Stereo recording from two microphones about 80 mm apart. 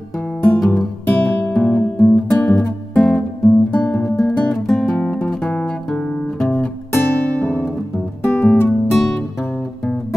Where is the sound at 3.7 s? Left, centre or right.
Left.